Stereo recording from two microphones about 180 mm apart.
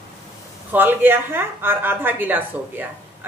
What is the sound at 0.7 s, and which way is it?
A woman's voice, 10° right (ahead or behind).